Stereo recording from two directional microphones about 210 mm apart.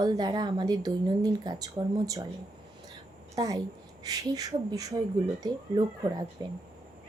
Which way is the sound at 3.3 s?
15° right (ahead or behind).